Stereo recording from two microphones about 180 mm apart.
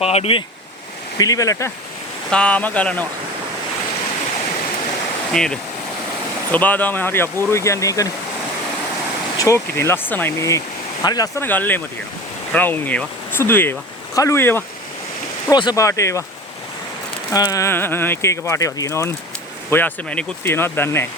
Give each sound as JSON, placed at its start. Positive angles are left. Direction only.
{"t": 0.0, "sound": "speech", "side_deg": 35}
{"t": 1.2, "sound": "speech", "side_deg": 20}
{"t": 2.3, "sound": "speech", "side_deg": 5}
{"t": 5.3, "sound": "speech", "side_deg": 5}
{"t": 9.4, "sound": "speech", "side_deg": 15}
{"t": 17.3, "sound": "speech", "side_deg": 20}